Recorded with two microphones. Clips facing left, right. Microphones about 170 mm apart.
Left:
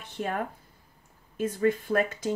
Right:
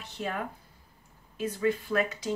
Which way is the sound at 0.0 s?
50° left (ahead or behind).